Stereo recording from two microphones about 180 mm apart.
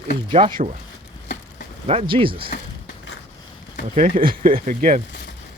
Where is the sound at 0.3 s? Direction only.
25° right (ahead or behind).